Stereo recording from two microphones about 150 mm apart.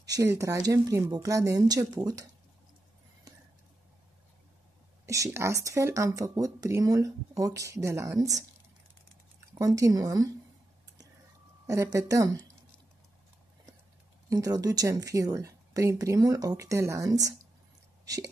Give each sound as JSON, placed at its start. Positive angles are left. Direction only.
{"t": 0.0, "sound": "speech", "side_deg": -20}
{"t": 3.3, "sound": "a sound", "side_deg": -25}
{"t": 5.0, "sound": "speech", "side_deg": -20}
{"t": 9.6, "sound": "speech", "side_deg": -20}
{"t": 11.6, "sound": "speech", "side_deg": -20}
{"t": 14.3, "sound": "speech", "side_deg": -25}
{"t": 18.0, "sound": "a sound", "side_deg": -25}